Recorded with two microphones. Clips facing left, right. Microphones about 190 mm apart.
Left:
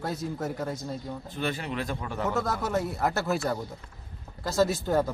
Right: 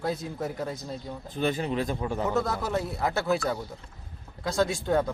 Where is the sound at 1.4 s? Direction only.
35° right (ahead or behind).